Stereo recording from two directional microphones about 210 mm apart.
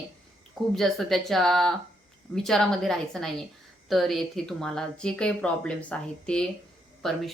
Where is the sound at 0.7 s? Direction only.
Centre (ahead or behind).